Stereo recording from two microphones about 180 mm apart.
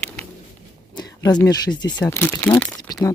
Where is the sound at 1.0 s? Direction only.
25° left (ahead or behind).